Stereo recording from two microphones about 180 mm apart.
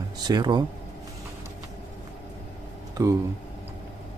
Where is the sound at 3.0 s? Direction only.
20° right (ahead or behind).